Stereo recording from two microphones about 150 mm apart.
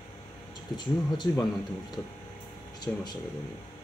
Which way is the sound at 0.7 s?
30° left (ahead or behind).